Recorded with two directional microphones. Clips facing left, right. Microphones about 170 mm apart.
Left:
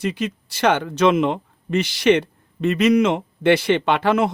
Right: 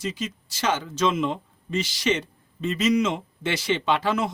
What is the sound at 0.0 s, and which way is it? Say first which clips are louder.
Speech: left 6 dB; 60° left (ahead or behind).